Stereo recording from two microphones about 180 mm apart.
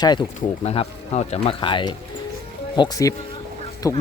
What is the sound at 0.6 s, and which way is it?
Speech, 35° left (ahead or behind).